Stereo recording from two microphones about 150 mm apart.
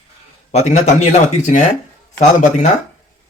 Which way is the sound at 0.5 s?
50° left (ahead or behind).